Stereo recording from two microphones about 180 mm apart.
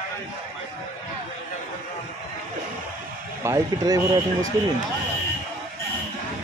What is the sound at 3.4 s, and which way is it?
Speech, 20° right (ahead or behind).